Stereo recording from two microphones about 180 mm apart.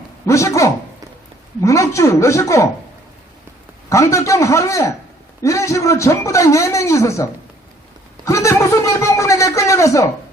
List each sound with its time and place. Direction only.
0.3 s a man's voice: 15° left (ahead or behind)
3.8 s a man's voice: 15° left (ahead or behind)